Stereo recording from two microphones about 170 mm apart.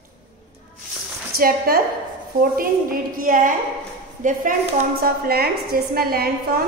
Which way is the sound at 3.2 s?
50° right (ahead or behind).